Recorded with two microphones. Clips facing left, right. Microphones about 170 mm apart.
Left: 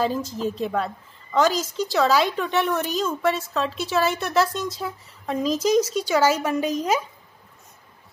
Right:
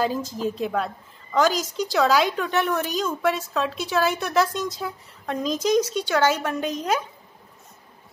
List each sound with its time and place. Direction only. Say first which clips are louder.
0.0 s a woman's voice: even; centre (ahead or behind)